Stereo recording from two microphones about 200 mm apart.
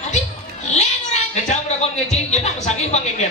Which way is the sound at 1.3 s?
35° left (ahead or behind).